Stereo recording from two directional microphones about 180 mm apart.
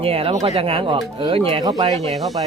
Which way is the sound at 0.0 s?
30° right (ahead or behind).